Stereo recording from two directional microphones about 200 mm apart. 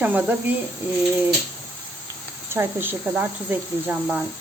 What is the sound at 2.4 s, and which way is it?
Speech, 10° right (ahead or behind).